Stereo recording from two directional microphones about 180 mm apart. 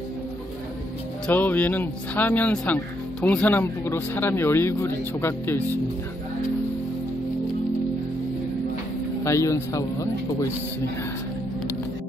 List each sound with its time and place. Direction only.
1.2 s speech: 10° left (ahead or behind)
9.2 s speech: 15° left (ahead or behind)